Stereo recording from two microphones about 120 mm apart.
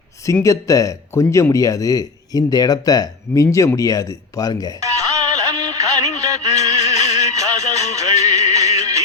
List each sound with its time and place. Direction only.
0.4 s speech: 30° left (ahead or behind)
4.8 s music: 30° right (ahead or behind)
6.6 s a sound: 30° right (ahead or behind)
7.0 s music: 30° right (ahead or behind)
7.6 s music: 70° left (ahead or behind)
7.9 s music: 30° right (ahead or behind)